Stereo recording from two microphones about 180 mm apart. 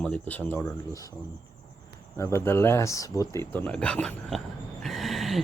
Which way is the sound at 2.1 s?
15° left (ahead or behind).